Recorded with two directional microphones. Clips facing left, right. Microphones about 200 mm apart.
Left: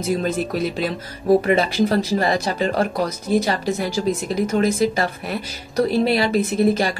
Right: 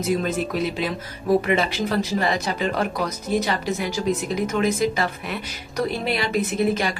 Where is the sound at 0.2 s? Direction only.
40° left (ahead or behind).